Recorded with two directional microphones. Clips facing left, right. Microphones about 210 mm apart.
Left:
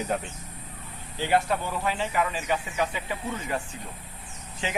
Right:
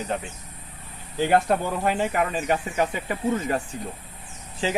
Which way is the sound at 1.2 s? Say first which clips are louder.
Right 4 dB; 50° right (ahead or behind).